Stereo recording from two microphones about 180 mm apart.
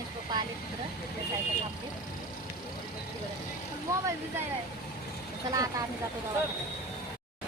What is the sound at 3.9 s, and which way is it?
Speech, 15° right (ahead or behind).